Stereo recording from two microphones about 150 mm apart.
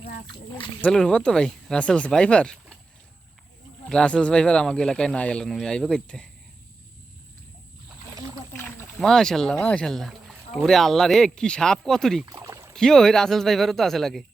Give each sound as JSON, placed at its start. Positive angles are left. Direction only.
{"t": 0.8, "sound": "speech", "side_deg": 5}
{"t": 3.8, "sound": "speech", "side_deg": 5}
{"t": 9.0, "sound": "speech", "side_deg": 5}
{"t": 12.2, "sound": "rowboat", "side_deg": -20}
{"t": 12.7, "sound": "speech", "side_deg": 5}